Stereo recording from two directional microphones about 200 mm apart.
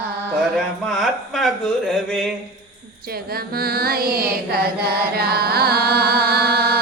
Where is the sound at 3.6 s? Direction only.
50° right (ahead or behind).